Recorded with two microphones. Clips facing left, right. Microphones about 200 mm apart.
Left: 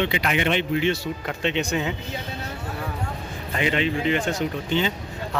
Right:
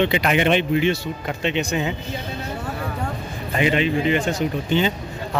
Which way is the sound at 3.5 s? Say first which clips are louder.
Right 4 dB; 10° right (ahead or behind).